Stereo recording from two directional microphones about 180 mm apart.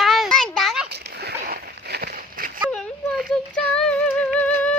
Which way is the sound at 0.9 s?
65° right (ahead or behind).